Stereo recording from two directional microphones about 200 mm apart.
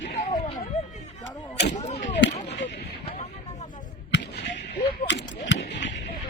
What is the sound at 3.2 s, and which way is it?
Vehicle, 40° left (ahead or behind).